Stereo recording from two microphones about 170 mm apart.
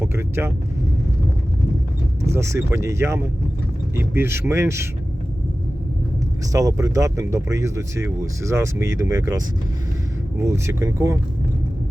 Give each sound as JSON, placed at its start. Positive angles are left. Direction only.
{"t": 0.0, "sound": "speech", "side_deg": -15}
{"t": 2.2, "sound": "speech", "side_deg": -15}
{"t": 6.5, "sound": "speech", "side_deg": -20}